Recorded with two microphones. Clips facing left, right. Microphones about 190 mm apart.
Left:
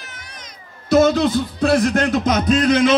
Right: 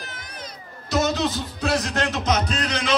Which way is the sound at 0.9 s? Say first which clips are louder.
Left 8 dB; 50° left (ahead or behind).